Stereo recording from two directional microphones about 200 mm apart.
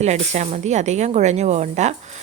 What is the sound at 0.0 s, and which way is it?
A woman's voice, 35° right (ahead or behind).